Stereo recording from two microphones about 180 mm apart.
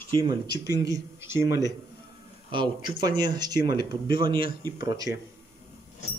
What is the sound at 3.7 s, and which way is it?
Speech, 60° left (ahead or behind).